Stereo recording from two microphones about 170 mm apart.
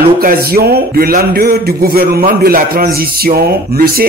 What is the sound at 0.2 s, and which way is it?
A man's voice, 60° right (ahead or behind).